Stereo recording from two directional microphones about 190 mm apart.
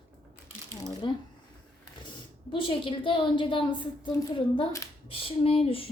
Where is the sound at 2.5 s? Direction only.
25° left (ahead or behind).